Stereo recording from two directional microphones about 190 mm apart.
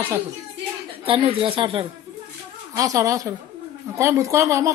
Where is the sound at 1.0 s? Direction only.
30° right (ahead or behind).